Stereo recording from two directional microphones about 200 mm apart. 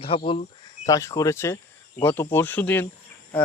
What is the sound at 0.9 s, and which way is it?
Speech, 15° left (ahead or behind).